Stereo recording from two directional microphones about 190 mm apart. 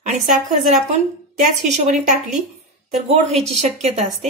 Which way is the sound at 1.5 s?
40° right (ahead or behind).